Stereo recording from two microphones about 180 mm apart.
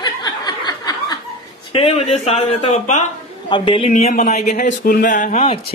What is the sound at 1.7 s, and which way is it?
Speech, 30° left (ahead or behind).